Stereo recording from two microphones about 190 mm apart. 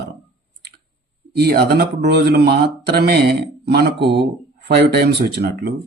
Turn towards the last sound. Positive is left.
turn(degrees=-55)  # may be behind; listen again after turning